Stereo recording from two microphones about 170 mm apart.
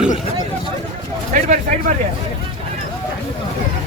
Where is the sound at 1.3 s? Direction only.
45° right (ahead or behind).